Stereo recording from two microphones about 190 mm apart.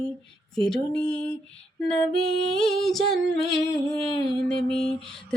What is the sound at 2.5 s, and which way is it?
A woman's voice, centre (ahead or behind).